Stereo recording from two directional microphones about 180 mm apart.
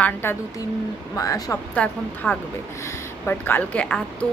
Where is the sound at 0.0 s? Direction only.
10° left (ahead or behind).